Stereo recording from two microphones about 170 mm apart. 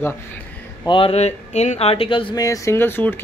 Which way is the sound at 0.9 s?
35° left (ahead or behind).